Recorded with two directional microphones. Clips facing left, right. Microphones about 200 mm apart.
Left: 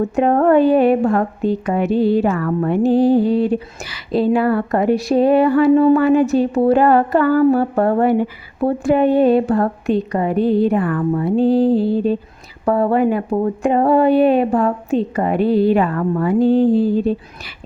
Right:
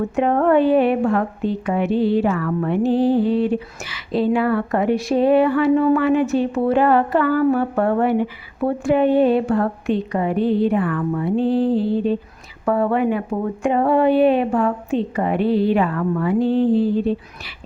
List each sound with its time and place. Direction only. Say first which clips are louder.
0.2 s a woman's voice: left 3 dB; 40° left (ahead or behind)